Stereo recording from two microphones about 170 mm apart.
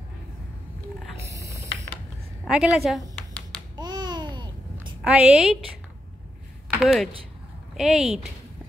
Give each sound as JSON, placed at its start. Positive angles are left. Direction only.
{"t": 1.2, "sound": "mechanisms", "side_deg": -20}
{"t": 2.4, "sound": "a woman's voice", "side_deg": -5}
{"t": 3.2, "sound": "a sound", "side_deg": 10}
{"t": 3.7, "sound": "babbling", "side_deg": -25}
{"t": 5.0, "sound": "a woman's voice", "side_deg": -5}
{"t": 6.8, "sound": "a woman's voice", "side_deg": 0}